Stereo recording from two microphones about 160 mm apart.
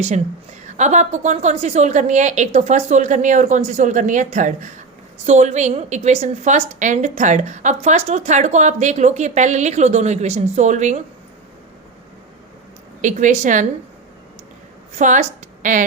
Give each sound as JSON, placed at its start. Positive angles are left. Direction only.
{"t": 0.6, "sound": "a woman's voice", "side_deg": -45}
{"t": 13.0, "sound": "a woman's voice", "side_deg": -50}
{"t": 14.9, "sound": "a woman's voice", "side_deg": -50}